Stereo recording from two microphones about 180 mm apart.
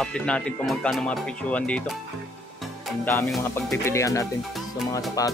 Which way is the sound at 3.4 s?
15° left (ahead or behind).